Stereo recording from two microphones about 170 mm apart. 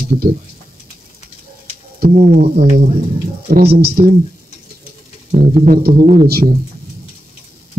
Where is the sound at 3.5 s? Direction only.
65° right (ahead or behind).